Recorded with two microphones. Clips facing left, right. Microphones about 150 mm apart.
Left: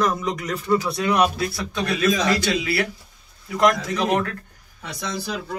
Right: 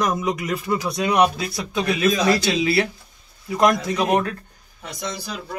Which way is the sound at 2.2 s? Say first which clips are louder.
Right 3 dB; 25° right (ahead or behind).